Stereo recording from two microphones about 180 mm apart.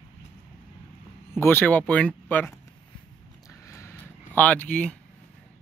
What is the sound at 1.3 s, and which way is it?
Speech, 10° left (ahead or behind).